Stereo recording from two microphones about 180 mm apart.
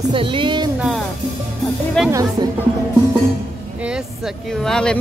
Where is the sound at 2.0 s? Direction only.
5° left (ahead or behind).